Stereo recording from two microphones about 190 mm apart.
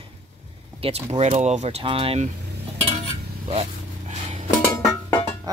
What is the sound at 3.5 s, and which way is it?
Vehicle, 35° right (ahead or behind).